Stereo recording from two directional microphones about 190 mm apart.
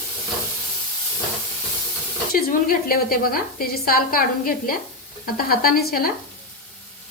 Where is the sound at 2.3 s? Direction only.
50° left (ahead or behind).